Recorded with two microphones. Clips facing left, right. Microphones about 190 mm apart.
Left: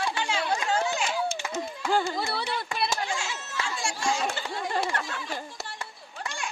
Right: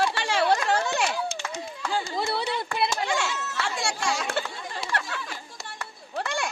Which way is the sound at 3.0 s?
70° right (ahead or behind).